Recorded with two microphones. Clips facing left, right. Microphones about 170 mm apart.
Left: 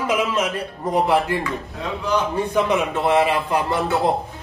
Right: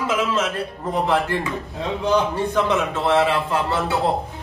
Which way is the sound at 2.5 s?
10° left (ahead or behind).